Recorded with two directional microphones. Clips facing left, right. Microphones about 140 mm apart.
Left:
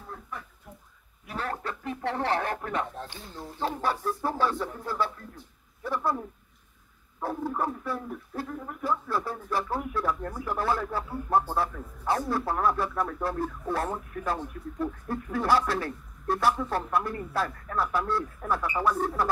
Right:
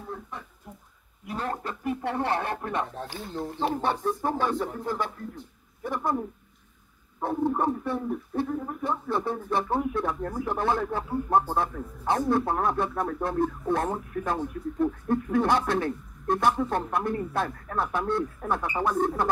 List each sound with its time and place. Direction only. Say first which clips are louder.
1.3 s a man's voice: right 2 dB; 20° right (ahead or behind)